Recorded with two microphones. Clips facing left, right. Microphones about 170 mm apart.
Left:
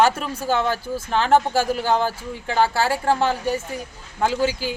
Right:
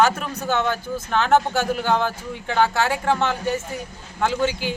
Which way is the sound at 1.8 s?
Centre (ahead or behind).